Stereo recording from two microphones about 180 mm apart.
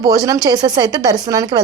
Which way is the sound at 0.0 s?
20° right (ahead or behind).